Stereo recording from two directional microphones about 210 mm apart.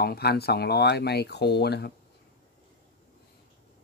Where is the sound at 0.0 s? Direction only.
50° left (ahead or behind).